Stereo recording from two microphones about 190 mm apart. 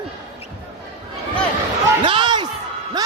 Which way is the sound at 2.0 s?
25° right (ahead or behind).